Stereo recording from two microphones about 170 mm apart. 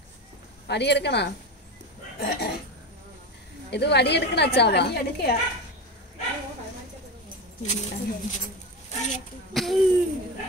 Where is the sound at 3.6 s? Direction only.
80° left.